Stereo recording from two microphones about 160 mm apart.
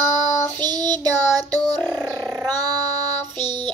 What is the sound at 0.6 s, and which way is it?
Child singing, 25° right (ahead or behind).